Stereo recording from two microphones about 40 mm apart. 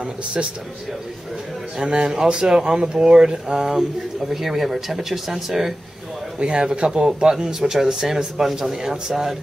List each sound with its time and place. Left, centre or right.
0.0 s speech: right
1.8 s speech: right
4.3 s speech: centre
6.4 s speech: right